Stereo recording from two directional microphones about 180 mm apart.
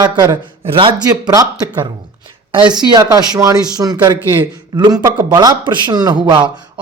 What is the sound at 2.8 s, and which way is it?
A man's voice, 20° right (ahead or behind).